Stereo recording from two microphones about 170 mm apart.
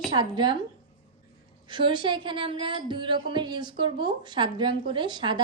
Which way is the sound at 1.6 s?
25° right (ahead or behind).